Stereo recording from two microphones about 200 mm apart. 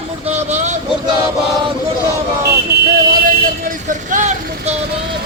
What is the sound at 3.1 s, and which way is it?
Vehicle, 45° right (ahead or behind).